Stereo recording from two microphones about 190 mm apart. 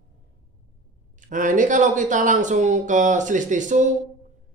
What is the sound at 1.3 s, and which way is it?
Speech, 40° right (ahead or behind).